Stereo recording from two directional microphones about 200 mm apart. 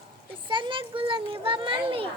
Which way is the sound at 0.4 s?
25° right (ahead or behind).